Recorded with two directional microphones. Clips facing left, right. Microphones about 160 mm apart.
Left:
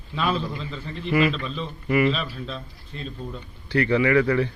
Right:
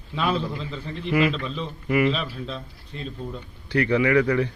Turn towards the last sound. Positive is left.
turn(degrees=-15)  # may be behind; listen again after turning